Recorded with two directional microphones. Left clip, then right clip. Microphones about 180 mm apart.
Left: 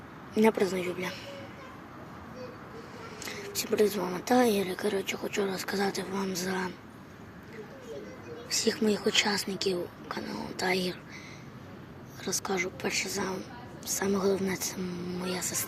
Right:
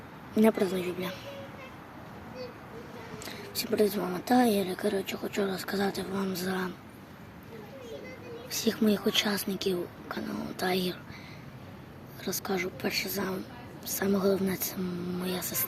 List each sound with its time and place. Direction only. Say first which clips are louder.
0.3 s speech: even; 15° right (ahead or behind)
3.2 s speech: left 1 dB; 10° right (ahead or behind)
8.4 s speech: left 1 dB; 15° right (ahead or behind)
12.2 s speech: left 1 dB; 15° right (ahead or behind)